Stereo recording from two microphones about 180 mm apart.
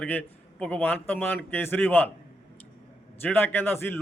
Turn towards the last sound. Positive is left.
turn(degrees=10)  # may be behind; listen again after turning